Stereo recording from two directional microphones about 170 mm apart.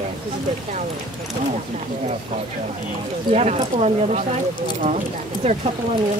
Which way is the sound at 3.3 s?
40° right (ahead or behind).